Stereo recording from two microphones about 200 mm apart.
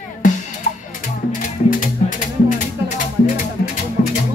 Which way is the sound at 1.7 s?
40° left (ahead or behind).